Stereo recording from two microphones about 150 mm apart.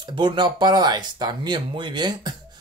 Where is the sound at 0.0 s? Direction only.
30° right (ahead or behind).